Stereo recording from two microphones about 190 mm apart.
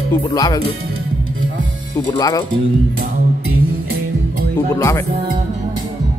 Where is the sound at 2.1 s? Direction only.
20° left (ahead or behind).